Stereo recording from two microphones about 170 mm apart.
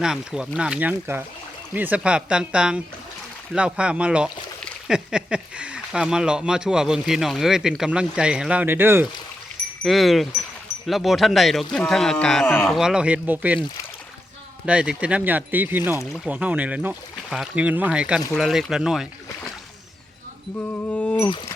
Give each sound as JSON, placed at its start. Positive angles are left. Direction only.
{"t": 0.0, "sound": "speech", "side_deg": -5}
{"t": 9.7, "sound": "speech", "side_deg": 0}
{"t": 14.7, "sound": "speech", "side_deg": -5}
{"t": 20.6, "sound": "mantra", "side_deg": 10}
{"t": 21.2, "sound": "speech", "side_deg": 25}